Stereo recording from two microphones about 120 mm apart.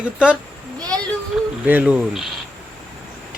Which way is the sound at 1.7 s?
10° right (ahead or behind).